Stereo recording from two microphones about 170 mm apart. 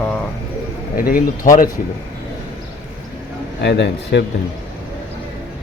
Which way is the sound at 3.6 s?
90° left.